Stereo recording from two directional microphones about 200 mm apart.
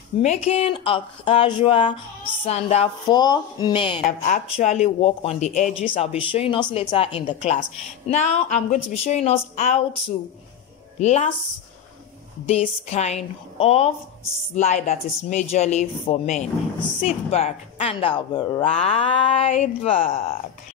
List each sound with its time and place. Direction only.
0.2 s a woman's voice: 35° left (ahead or behind)
3.1 s a woman's voice: 20° left (ahead or behind)
12.4 s a woman's voice: 30° left (ahead or behind)